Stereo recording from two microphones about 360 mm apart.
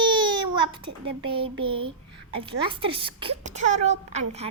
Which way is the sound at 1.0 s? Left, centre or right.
Centre.